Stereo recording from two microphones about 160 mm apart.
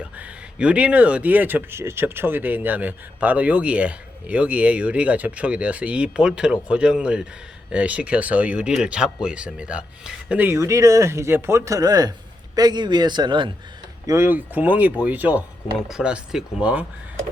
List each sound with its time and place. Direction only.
0.0 s speech: 5° right (ahead or behind); by 13.5 s 30° right (ahead or behind)
14.1 s speech: 15° right (ahead or behind)